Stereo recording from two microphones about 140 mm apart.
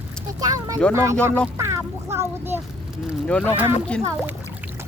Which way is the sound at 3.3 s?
5° left (ahead or behind).